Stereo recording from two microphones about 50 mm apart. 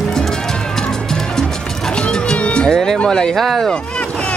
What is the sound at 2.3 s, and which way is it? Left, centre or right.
Music, left.